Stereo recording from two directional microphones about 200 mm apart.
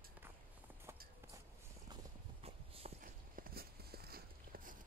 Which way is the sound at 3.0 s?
45° right (ahead or behind).